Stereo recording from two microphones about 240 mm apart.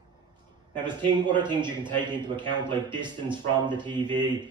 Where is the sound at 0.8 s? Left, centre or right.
Centre.